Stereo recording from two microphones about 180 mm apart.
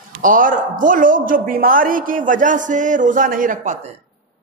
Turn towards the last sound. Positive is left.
turn(degrees=-45)  # may be behind; listen again after turning